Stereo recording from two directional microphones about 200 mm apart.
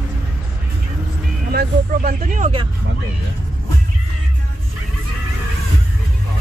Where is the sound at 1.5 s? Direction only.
45° right (ahead or behind).